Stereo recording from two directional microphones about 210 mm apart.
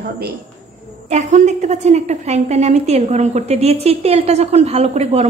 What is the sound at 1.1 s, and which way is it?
A woman's voice, 35° right (ahead or behind).